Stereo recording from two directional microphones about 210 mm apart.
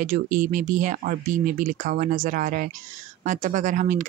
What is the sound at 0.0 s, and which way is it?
Speech, 35° right (ahead or behind).